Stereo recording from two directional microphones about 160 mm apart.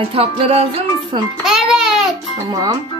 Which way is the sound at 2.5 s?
25° right (ahead or behind).